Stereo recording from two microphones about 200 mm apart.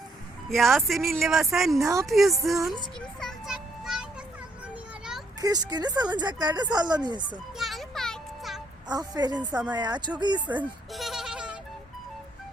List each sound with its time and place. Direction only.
0.5 s speech: centre (ahead or behind)
1.8 s a woman's voice: 15° right (ahead or behind)
2.0 s speech: centre (ahead or behind)
3.2 s music: centre (ahead or behind)
4.7 s a sound: 5° right (ahead or behind)
5.4 s speech: 20° right (ahead or behind)
7.5 s music: centre (ahead or behind)
8.9 s speech: 20° right (ahead or behind)
10.6 s music: centre (ahead or behind)